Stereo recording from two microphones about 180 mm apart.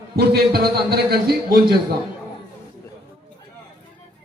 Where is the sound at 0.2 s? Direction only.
65° right (ahead or behind).